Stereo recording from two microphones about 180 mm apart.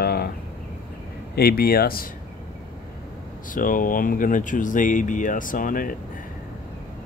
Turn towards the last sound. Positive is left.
turn(degrees=50)  # may be behind; listen again after turning